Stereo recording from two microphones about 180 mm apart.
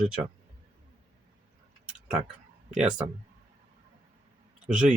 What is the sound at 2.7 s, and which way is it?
Speech, 5° right (ahead or behind).